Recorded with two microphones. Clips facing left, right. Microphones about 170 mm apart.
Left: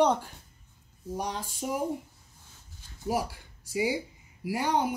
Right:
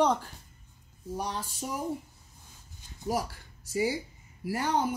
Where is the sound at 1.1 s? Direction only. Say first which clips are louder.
Left 1 dB; 10° left (ahead or behind).